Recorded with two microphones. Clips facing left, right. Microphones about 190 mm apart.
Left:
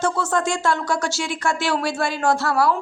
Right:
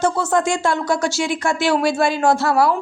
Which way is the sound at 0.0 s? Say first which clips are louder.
Right 3 dB; 10° right (ahead or behind).